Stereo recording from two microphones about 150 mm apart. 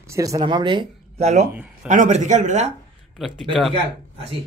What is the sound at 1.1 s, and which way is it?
Speech, 45° right (ahead or behind).